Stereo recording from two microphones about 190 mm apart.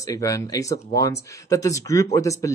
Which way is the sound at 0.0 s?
15° left (ahead or behind).